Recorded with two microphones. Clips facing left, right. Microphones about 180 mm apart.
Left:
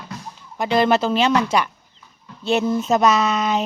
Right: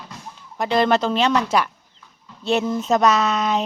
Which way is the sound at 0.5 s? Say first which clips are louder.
Left 1 dB; centre (ahead or behind).